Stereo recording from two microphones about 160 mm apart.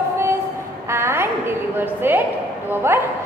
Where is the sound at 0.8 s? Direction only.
15° right (ahead or behind).